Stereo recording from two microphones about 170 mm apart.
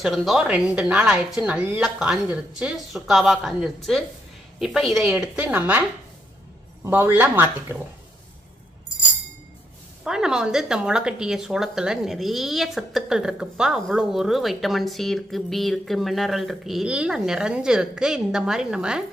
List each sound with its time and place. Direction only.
0.0 s a woman's voice: centre (ahead or behind)
10.0 s speech: 5° right (ahead or behind)